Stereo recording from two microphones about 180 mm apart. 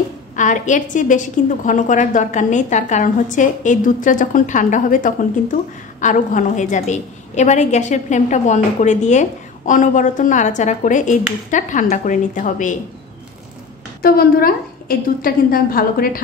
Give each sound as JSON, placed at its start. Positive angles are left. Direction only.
{"t": 0.4, "sound": "a woman's voice", "side_deg": 45}
{"t": 14.0, "sound": "a woman's voice", "side_deg": 55}